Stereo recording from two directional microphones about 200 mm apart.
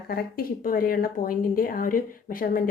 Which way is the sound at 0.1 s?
50° left (ahead or behind).